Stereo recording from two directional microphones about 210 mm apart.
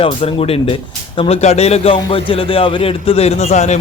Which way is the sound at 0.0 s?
25° left (ahead or behind).